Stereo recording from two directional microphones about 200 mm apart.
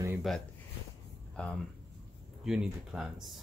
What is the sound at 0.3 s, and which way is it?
Speech, centre (ahead or behind).